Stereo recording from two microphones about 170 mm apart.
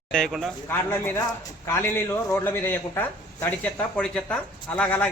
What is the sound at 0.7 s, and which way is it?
Speech, 15° left (ahead or behind).